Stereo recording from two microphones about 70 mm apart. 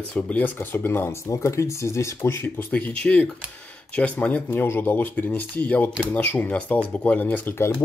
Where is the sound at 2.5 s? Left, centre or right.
Left.